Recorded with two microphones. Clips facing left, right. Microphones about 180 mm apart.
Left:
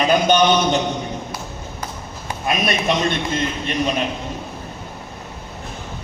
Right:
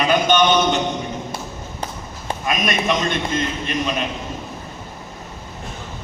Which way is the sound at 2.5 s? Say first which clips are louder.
Left 1 dB; 35° left (ahead or behind).